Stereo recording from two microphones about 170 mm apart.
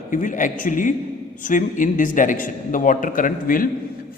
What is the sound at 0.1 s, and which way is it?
A man's voice, 50° left (ahead or behind).